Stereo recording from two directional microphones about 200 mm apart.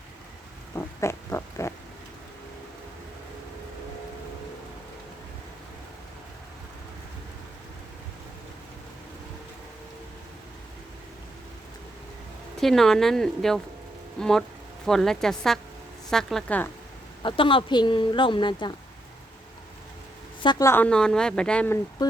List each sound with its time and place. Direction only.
0.8 s pig: 15° left (ahead or behind)
12.5 s speech: centre (ahead or behind)
17.2 s speech: 25° left (ahead or behind)
20.4 s speech: 20° left (ahead or behind)